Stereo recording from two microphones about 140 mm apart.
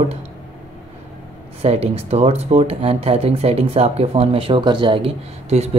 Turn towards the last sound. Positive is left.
turn(degrees=-45)  # may be behind; listen again after turning